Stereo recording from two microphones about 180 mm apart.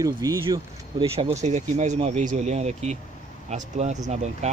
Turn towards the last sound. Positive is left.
turn(degrees=-40)  # may be behind; listen again after turning